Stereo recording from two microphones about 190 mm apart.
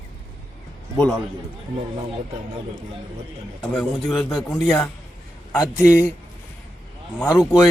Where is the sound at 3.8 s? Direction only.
Centre (ahead or behind).